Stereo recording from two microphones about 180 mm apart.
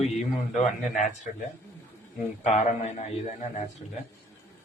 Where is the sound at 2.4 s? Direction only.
40° left (ahead or behind).